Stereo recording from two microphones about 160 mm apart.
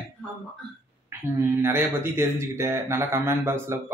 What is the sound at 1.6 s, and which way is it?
Speech, 15° right (ahead or behind).